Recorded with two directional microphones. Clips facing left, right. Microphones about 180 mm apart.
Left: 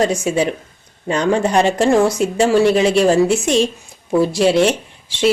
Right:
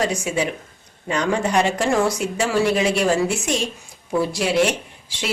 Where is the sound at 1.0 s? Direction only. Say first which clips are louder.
Left 5 dB; 30° left (ahead or behind).